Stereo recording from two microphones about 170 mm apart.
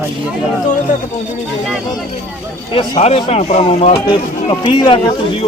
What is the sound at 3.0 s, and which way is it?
Speech, 40° left (ahead or behind).